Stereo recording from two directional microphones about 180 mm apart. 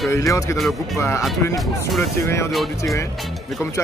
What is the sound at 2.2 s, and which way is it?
Speech, 15° left (ahead or behind).